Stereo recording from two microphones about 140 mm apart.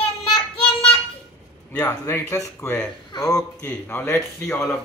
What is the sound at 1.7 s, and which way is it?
Speech, 15° left (ahead or behind).